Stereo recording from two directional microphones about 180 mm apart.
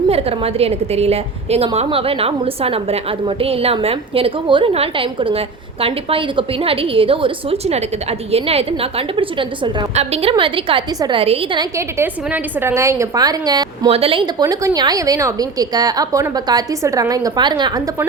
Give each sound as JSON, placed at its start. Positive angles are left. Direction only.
{"t": 0.1, "sound": "a woman's voice", "side_deg": -35}